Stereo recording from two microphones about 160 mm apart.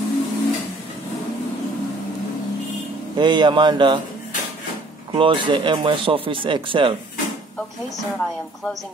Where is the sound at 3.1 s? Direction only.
30° right (ahead or behind).